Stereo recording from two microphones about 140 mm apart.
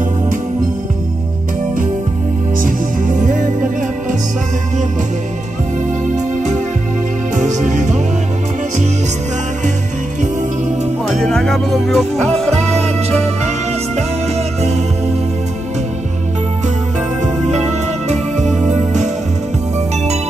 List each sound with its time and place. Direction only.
2.6 s music: 70° right (ahead or behind)
7.3 s music: 60° right (ahead or behind)
11.1 s music: 5° left (ahead or behind)